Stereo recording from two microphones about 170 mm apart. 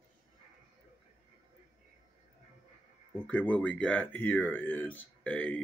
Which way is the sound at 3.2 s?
10° left (ahead or behind).